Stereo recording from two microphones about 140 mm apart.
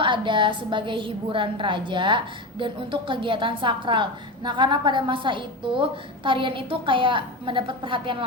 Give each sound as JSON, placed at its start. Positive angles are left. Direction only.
{"t": 0.0, "sound": "a woman's voice", "side_deg": -35}